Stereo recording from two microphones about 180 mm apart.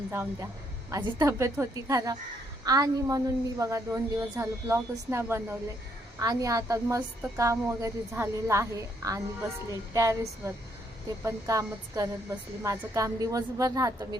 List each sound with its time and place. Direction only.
0.1 s a woman's voice: 15° right (ahead or behind)